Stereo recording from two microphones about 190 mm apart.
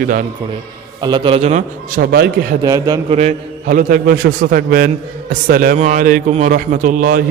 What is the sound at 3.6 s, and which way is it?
A man's voice, 50° right (ahead or behind).